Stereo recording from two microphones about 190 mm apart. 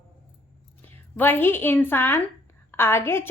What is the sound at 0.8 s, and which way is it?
Speech, 10° left (ahead or behind).